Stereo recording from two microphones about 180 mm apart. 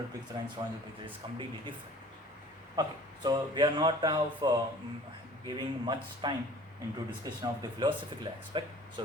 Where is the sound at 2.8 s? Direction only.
25° right (ahead or behind).